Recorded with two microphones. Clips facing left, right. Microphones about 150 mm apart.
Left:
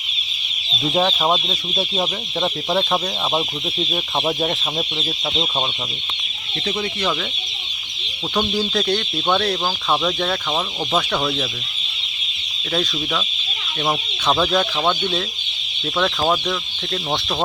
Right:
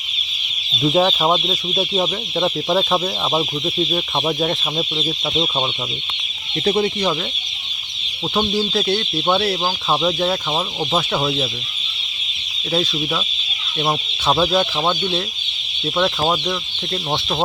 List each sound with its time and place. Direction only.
0.8 s speech: centre (ahead or behind)
6.7 s speech: 35° right (ahead or behind)
8.5 s speech: 5° right (ahead or behind)
13.8 s speech: 10° right (ahead or behind)